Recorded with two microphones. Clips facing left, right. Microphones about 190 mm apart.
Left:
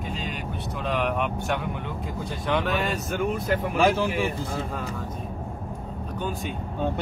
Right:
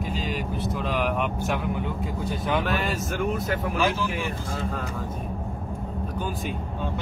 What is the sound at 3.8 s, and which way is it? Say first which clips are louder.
Speech: left 5 dB; 55° left (ahead or behind).